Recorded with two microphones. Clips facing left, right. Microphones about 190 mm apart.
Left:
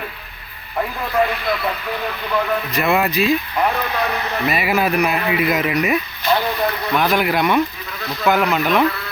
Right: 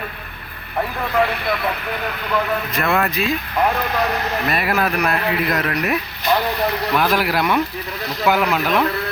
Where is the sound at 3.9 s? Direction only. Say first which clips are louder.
Right 1 dB; 45° right (ahead or behind).